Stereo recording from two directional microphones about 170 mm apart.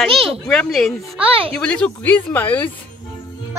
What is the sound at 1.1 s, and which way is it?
Speech, 35° right (ahead or behind).